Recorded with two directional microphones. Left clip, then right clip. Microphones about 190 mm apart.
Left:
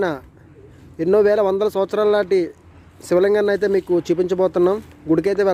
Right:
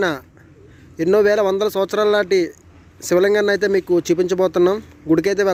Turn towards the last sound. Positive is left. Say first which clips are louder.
# right 1 dB
turn(degrees=0)  # may be behind; listen again after turning